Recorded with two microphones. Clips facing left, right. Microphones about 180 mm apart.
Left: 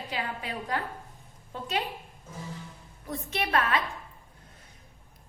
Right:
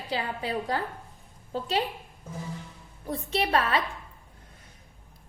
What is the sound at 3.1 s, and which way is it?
Speech, 30° right (ahead or behind).